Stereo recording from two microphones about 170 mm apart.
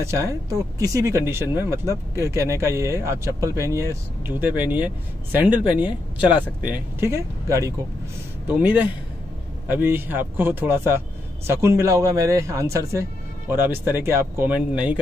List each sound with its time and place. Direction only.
0.0 s speech: 15° right (ahead or behind)